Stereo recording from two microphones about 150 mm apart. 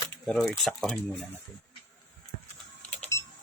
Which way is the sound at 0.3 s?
Centre (ahead or behind).